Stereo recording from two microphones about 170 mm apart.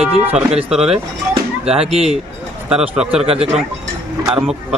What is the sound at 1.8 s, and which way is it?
Speech, 35° right (ahead or behind).